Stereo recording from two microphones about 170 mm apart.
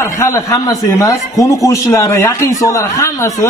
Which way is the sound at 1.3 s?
Centre (ahead or behind).